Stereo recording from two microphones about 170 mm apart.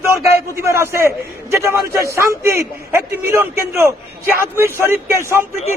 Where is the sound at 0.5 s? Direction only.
15° right (ahead or behind).